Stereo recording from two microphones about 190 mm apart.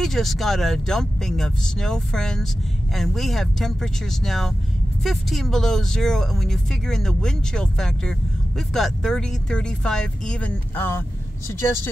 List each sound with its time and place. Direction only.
0.0 s speech: centre (ahead or behind)